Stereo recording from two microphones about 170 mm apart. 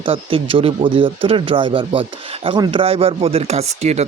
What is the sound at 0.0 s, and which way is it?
Speech, 30° right (ahead or behind).